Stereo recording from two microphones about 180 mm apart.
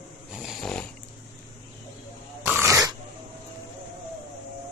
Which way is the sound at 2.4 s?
15° right (ahead or behind).